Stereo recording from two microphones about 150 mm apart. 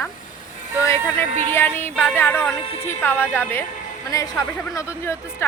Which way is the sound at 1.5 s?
15° left (ahead or behind).